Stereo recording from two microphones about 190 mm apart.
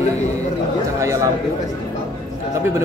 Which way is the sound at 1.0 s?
15° right (ahead or behind).